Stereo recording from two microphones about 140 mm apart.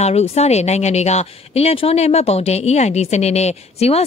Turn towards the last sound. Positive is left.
turn(degrees=50)  # may be behind; listen again after turning